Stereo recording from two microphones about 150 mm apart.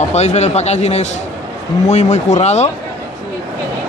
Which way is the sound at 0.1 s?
45° left (ahead or behind).